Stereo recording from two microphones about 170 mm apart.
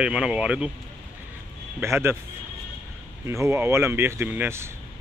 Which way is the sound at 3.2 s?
15° right (ahead or behind).